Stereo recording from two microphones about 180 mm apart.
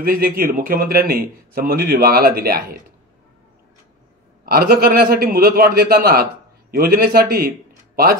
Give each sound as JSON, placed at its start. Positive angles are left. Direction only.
{"t": 0.0, "sound": "a man's voice", "side_deg": -55}
{"t": 4.5, "sound": "a man's voice", "side_deg": -60}